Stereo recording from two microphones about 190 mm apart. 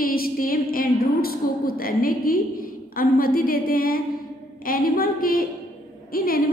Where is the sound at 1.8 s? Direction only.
50° left (ahead or behind).